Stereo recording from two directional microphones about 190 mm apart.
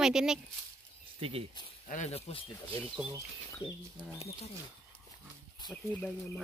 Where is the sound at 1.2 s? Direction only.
30° right (ahead or behind).